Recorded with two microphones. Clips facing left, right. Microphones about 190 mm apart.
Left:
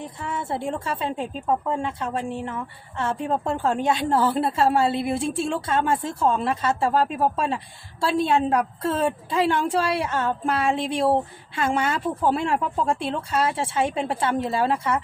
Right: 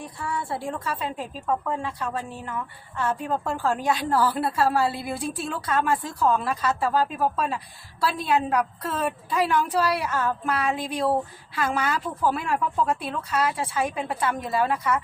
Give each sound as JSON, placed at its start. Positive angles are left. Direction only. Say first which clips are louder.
{"t": 0.0, "sound": "a woman's voice", "louder": "left 1 dB", "side_deg": 20}